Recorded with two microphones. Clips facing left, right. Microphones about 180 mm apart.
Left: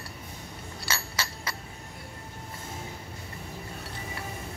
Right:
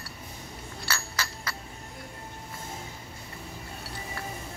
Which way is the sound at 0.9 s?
25° left (ahead or behind).